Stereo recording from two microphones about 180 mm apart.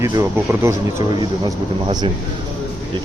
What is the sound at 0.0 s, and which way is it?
Speech, 15° right (ahead or behind).